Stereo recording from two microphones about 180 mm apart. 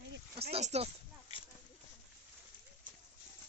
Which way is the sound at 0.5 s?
35° right (ahead or behind).